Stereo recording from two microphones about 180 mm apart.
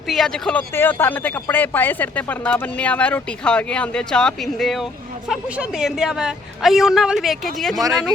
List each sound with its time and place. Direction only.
0.1 s a woman's voice: centre (ahead or behind)
7.8 s speech: 20° right (ahead or behind)